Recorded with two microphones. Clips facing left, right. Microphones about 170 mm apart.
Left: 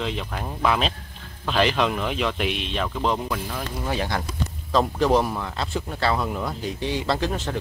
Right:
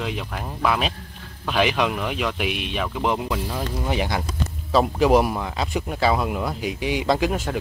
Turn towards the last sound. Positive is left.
turn(degrees=-10)  # may be behind; listen again after turning